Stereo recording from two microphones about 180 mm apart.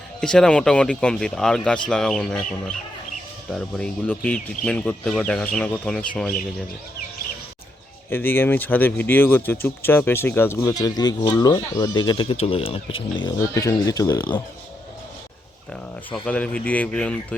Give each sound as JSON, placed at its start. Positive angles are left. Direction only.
{"t": 0.2, "sound": "speech", "side_deg": 5}
{"t": 8.1, "sound": "speech", "side_deg": 10}
{"t": 13.1, "sound": "speech", "side_deg": 20}
{"t": 16.2, "sound": "speech", "side_deg": 5}